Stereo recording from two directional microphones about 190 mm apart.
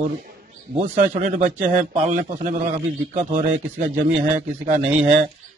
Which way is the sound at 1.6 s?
40° right (ahead or behind).